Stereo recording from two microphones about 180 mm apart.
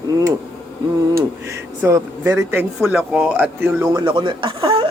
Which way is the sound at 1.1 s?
15° right (ahead or behind).